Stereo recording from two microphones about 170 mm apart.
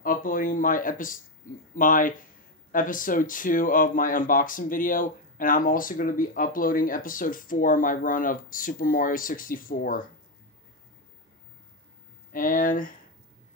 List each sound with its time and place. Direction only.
0.0 s speech: 55° left (ahead or behind)
12.3 s speech: 55° left (ahead or behind)